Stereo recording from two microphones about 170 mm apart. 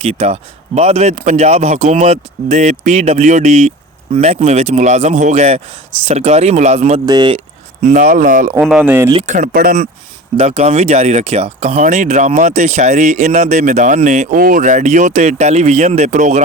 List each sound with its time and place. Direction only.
0.0 s speech: 35° right (ahead or behind)
7.0 s speech: 25° right (ahead or behind); by 8.5 s 50° right (ahead or behind)
8.6 s speech: 5° right (ahead or behind)
9.1 s speech: 45° right (ahead or behind)
10.3 s speech: 40° right (ahead or behind)